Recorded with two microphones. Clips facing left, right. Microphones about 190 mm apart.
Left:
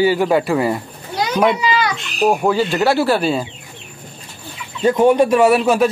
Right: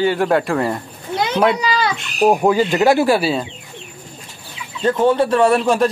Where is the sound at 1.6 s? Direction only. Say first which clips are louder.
Left 1 dB; 35° right (ahead or behind).